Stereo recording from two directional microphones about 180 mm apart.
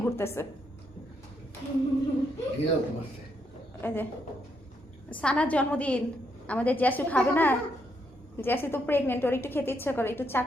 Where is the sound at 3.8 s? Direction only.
10° left (ahead or behind).